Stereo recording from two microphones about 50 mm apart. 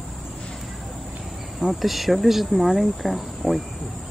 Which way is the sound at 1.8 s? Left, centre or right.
Centre.